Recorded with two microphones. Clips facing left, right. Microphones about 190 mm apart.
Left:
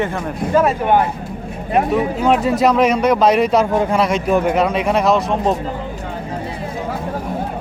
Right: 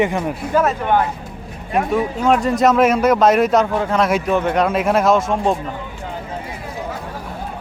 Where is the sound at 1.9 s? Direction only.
5° left (ahead or behind).